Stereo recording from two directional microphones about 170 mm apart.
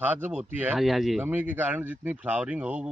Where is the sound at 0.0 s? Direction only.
10° right (ahead or behind).